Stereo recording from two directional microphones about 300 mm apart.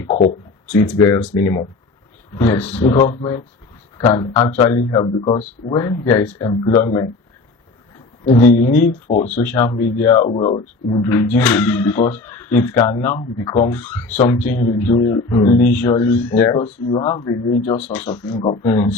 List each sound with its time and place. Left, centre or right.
0.0 s speech: left
0.9 s speech: centre
8.3 s speech: left
9.4 s speech: centre
14.2 s speech: left
15.7 s speech: centre